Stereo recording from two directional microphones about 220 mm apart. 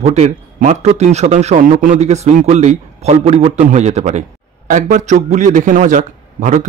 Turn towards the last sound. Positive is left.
turn(degrees=-35)  # may be behind; listen again after turning